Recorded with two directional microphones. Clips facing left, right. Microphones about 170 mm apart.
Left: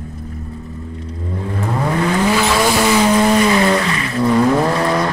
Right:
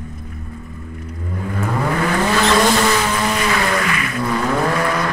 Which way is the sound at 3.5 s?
30° left (ahead or behind).